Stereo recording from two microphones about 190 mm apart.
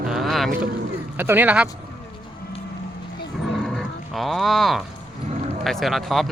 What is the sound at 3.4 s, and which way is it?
Roaring cats, centre (ahead or behind).